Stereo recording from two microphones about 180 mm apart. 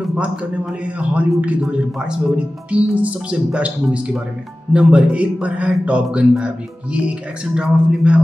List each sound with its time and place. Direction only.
0.1 s a man's voice: 5° right (ahead or behind)